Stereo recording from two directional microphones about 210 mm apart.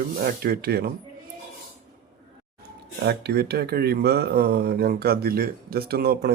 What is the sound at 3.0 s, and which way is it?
Speech, 50° right (ahead or behind).